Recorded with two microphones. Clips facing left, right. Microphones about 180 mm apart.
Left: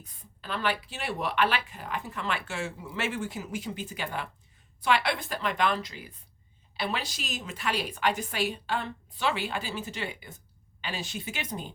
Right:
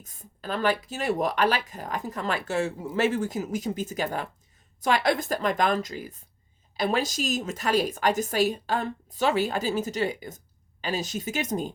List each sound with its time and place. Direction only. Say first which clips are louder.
0.0 s a woman's voice: right 7 dB; 45° right (ahead or behind)